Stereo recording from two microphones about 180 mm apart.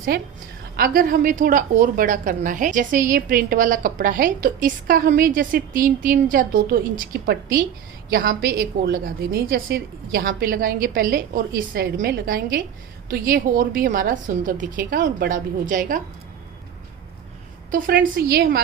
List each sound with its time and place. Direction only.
0.1 s a woman's voice: 60° right (ahead or behind)
17.7 s a woman's voice: 50° right (ahead or behind)